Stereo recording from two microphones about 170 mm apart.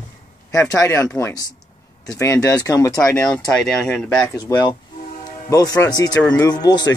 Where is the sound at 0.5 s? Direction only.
20° left (ahead or behind).